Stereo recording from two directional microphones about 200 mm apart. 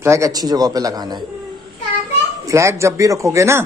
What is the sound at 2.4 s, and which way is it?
Speech, 15° right (ahead or behind).